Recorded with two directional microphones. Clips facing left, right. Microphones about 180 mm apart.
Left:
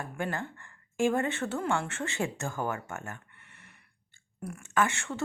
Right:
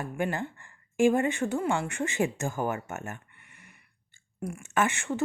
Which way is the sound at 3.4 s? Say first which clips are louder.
Right 1 dB; 10° right (ahead or behind).